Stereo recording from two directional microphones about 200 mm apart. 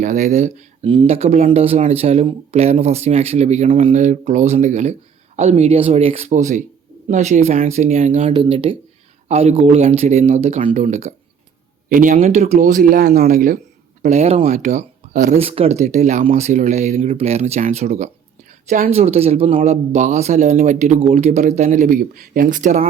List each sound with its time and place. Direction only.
0.0 s speech: 35° right (ahead or behind)
8.3 s speech: 25° right (ahead or behind); by 13.6 s 45° right (ahead or behind)
14.0 s speech: 35° right (ahead or behind)